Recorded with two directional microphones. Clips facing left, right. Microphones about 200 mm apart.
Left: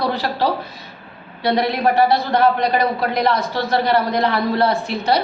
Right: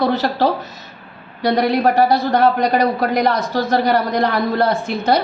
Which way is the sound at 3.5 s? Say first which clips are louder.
Right 2 dB; 45° right (ahead or behind).